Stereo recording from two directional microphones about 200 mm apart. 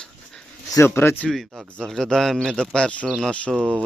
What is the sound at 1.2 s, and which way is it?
A man's voice, centre (ahead or behind).